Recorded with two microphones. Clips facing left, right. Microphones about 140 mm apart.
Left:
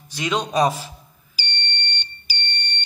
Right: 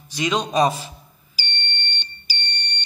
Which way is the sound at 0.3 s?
10° left (ahead or behind).